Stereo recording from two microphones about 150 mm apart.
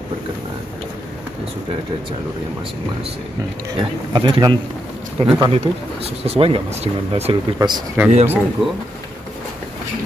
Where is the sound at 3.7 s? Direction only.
30° right (ahead or behind).